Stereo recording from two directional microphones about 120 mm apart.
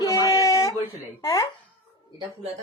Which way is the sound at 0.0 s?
30° left (ahead or behind).